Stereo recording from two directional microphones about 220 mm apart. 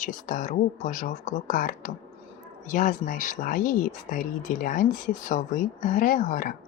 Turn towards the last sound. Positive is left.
turn(degrees=35)  # may be behind; listen again after turning